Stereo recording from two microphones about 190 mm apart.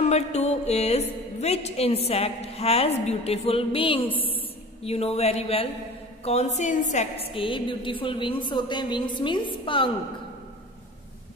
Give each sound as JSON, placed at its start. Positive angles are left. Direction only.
{"t": 0.0, "sound": "a woman's voice", "side_deg": 35}